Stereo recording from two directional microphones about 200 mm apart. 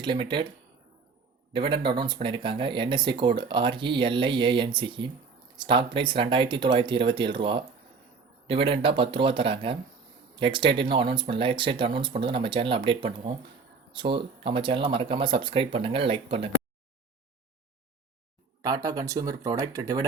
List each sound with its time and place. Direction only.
0.0 s speech: 25° right (ahead or behind)
1.5 s speech: 25° right (ahead or behind)
18.6 s speech: 20° right (ahead or behind)